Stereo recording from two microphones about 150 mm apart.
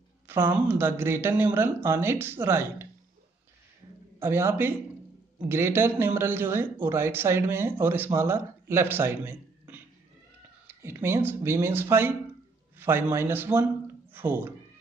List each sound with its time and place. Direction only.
0.3 s speech: 15° right (ahead or behind)
4.2 s a man's voice: 15° right (ahead or behind)